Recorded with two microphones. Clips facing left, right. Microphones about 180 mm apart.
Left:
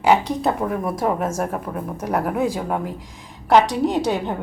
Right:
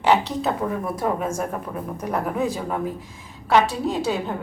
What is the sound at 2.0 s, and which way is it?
Speech, 10° left (ahead or behind).